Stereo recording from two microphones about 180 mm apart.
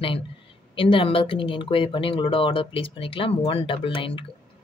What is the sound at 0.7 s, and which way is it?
Speech, 30° left (ahead or behind).